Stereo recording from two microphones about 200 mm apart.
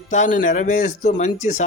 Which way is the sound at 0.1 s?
40° left (ahead or behind).